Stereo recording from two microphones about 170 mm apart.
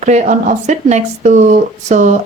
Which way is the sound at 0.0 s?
45° right (ahead or behind).